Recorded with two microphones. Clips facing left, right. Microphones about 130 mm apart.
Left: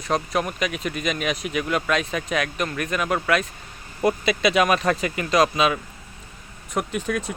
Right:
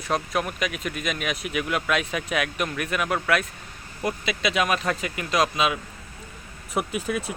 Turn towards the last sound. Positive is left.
turn(degrees=-5)  # may be behind; listen again after turning